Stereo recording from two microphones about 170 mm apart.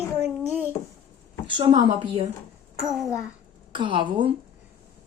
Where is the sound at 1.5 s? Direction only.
30° right (ahead or behind).